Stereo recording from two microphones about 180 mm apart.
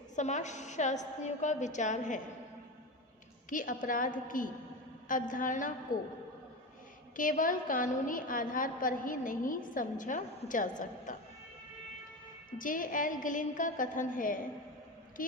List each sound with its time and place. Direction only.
0.2 s a woman's voice: 40° left (ahead or behind)
3.5 s a woman's voice: 45° left (ahead or behind)
7.2 s a woman's voice: 50° left (ahead or behind)
12.5 s a woman's voice: 50° left (ahead or behind)